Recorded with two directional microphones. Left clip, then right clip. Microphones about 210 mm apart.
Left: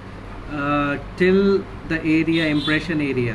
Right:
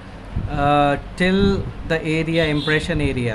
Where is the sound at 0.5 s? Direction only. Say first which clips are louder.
Right 5 dB; 50° right (ahead or behind).